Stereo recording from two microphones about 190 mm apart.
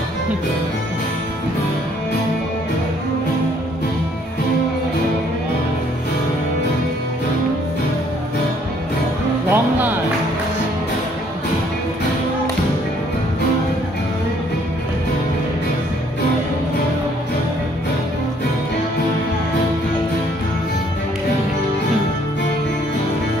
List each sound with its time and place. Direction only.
9.5 s music: 10° right (ahead or behind)